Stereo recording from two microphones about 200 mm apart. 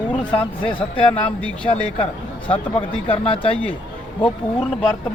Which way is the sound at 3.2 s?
30° left (ahead or behind).